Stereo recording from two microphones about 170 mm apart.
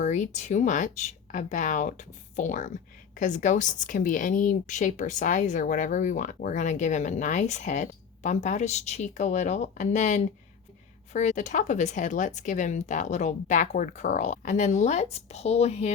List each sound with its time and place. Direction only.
0.0 s a woman's voice: 45° left (ahead or behind)